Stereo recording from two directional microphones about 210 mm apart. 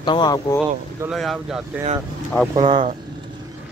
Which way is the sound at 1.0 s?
Centre (ahead or behind).